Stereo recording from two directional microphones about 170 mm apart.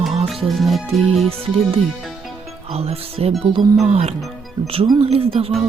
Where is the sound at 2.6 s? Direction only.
35° right (ahead or behind).